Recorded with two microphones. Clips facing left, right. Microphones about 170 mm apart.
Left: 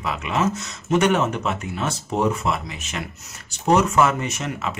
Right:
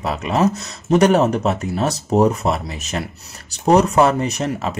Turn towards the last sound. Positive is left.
turn(degrees=-35)  # may be behind; listen again after turning